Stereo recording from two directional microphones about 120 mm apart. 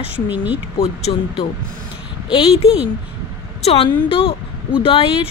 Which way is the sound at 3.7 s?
50° left (ahead or behind).